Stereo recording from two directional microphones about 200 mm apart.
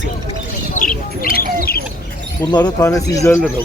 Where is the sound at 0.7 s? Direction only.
45° left (ahead or behind).